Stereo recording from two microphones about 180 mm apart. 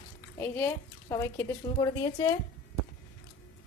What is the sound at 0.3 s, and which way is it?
A woman's voice, 15° left (ahead or behind).